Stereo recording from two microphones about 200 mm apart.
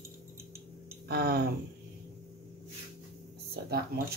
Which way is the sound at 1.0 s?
50° right (ahead or behind).